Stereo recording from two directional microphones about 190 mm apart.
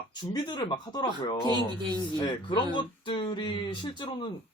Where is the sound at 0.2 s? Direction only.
20° left (ahead or behind).